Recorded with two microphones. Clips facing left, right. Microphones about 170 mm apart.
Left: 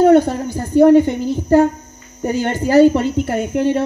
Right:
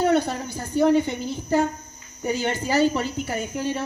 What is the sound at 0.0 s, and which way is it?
A woman's voice, 45° left (ahead or behind).